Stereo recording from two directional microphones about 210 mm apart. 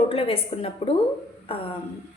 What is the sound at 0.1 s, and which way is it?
Speech, 25° left (ahead or behind).